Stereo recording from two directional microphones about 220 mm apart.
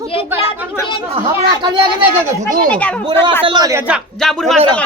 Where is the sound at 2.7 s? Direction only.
5° left (ahead or behind).